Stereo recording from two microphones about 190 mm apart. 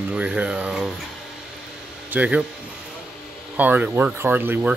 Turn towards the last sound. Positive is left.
turn(degrees=-10)  # may be behind; listen again after turning